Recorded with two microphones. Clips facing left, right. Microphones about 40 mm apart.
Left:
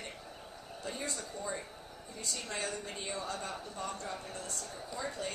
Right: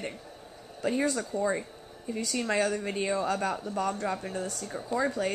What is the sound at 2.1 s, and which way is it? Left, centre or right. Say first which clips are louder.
A woman's voice: right 12 dB; right.